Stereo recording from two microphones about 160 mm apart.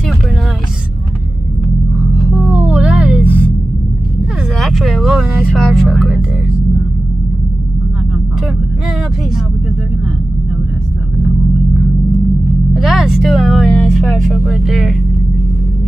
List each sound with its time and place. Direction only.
2.1 s music: 5° right (ahead or behind)
4.6 s music: centre (ahead or behind)
12.7 s music: centre (ahead or behind)